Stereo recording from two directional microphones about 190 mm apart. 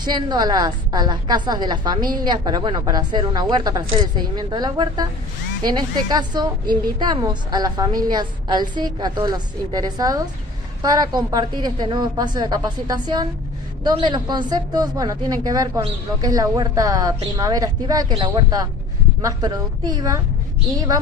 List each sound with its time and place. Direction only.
0.0 s a woman's voice: 20° right (ahead or behind)